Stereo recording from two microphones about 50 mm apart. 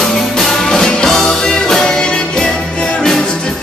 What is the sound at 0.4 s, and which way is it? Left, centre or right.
Music, centre.